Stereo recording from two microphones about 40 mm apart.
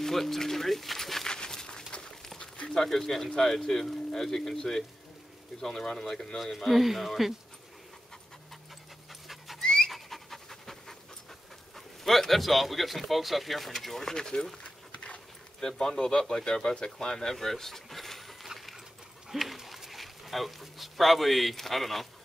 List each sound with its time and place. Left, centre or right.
0.0 s speech: centre
1.3 s a sound: centre
2.6 s speech: centre
6.4 s speech: centre
9.6 s pant: centre
9.8 s pant: centre
11.7 s speech: centre
14.6 s a sound: left
15.6 s speech: centre